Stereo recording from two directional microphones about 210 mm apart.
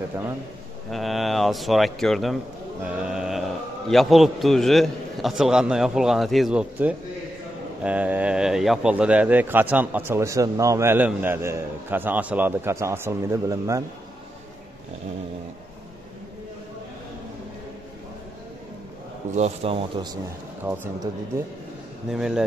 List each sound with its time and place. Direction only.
0.8 s a man's voice: centre (ahead or behind); by 13.8 s 15° right (ahead or behind)
19.3 s speech: 30° right (ahead or behind)
20.6 s speech: 10° right (ahead or behind)
22.1 s a man's voice: centre (ahead or behind)